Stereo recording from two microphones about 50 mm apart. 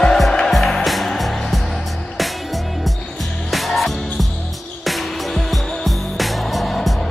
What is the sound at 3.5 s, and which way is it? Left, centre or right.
Music, centre.